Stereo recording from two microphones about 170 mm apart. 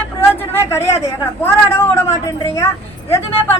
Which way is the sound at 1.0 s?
15° left (ahead or behind).